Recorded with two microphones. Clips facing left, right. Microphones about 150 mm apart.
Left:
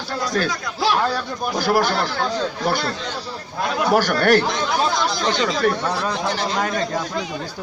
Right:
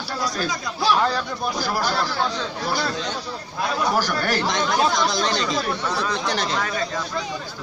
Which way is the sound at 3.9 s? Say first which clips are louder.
Left 7 dB; 60° left (ahead or behind).